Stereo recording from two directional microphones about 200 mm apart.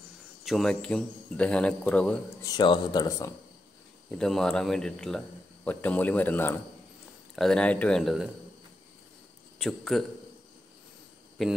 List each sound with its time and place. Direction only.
0.5 s a man's voice: 5° left (ahead or behind)
2.4 s speech: 20° left (ahead or behind)
4.2 s a man's voice: 5° left (ahead or behind)
9.6 s a man's voice: centre (ahead or behind)
11.4 s a man's voice: centre (ahead or behind)